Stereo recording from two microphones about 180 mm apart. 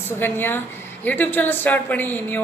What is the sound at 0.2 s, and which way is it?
Speech, 10° left (ahead or behind).